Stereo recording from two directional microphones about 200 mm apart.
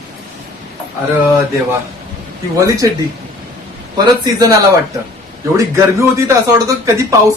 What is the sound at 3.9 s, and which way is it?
Speech, 20° right (ahead or behind).